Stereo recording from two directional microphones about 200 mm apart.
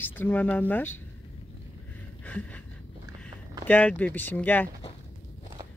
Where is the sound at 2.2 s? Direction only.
5° left (ahead or behind).